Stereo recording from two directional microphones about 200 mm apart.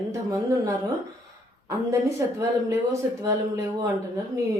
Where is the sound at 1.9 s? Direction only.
15° right (ahead or behind).